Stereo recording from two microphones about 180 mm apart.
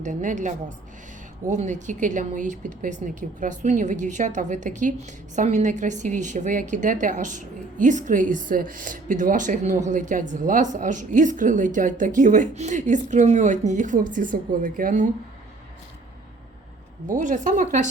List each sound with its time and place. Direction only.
0.0 s speech: 45° right (ahead or behind)
17.1 s speech: 45° right (ahead or behind)